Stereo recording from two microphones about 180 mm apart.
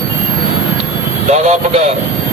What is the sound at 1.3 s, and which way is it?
Speech, 40° right (ahead or behind).